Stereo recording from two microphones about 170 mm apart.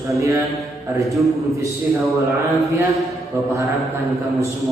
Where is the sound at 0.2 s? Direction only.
20° right (ahead or behind).